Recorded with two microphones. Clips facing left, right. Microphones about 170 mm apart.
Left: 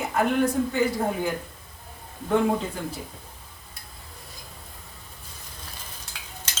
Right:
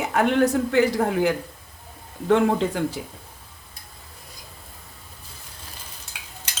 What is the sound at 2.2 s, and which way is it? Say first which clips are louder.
Speech: right 4 dB; 90° right.